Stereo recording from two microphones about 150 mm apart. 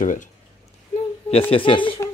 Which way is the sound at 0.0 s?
60° left (ahead or behind).